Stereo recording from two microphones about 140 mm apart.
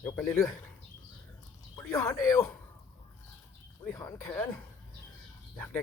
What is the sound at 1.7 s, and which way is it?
Speech, 15° left (ahead or behind).